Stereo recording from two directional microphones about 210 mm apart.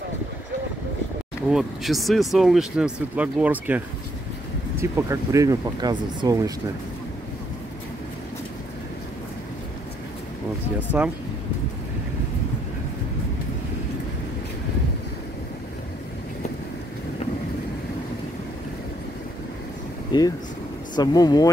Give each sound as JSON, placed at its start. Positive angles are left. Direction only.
{"t": 1.5, "sound": "speech", "side_deg": 0}
{"t": 11.0, "sound": "speech", "side_deg": -5}
{"t": 20.1, "sound": "speech", "side_deg": 20}